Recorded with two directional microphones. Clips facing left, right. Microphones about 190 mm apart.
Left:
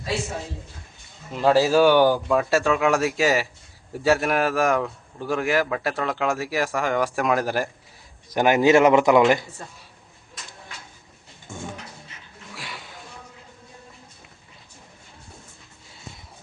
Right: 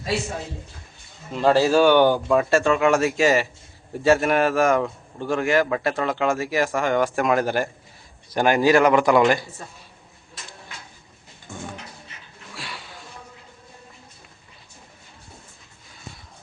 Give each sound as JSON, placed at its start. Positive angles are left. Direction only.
{"t": 1.3, "sound": "speech", "side_deg": 5}
{"t": 8.3, "sound": "speech", "side_deg": 20}
{"t": 12.5, "sound": "a sound", "side_deg": 20}